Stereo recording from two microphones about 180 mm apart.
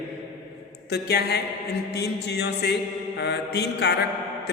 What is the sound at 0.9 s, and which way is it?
A man's voice, 65° left (ahead or behind).